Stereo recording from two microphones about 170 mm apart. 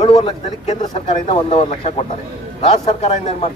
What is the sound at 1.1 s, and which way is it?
Speech, 35° left (ahead or behind).